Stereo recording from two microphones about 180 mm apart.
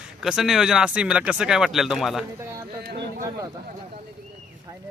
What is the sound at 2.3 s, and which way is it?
Speech, 15° right (ahead or behind).